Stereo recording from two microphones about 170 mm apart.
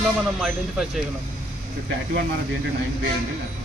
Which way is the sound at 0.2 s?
Centre (ahead or behind).